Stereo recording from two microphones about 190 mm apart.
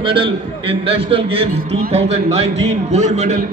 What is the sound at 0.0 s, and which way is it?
A man's voice, 25° right (ahead or behind).